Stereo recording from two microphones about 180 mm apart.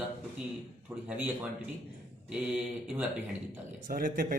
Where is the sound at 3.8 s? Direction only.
50° right (ahead or behind).